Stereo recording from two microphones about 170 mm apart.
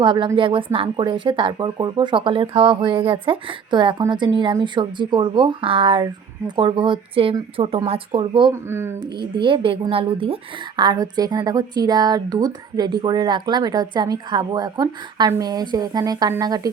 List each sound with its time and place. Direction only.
0.0 s speech: 30° right (ahead or behind)